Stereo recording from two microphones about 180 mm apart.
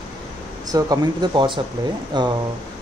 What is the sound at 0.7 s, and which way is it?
Speech, 20° right (ahead or behind).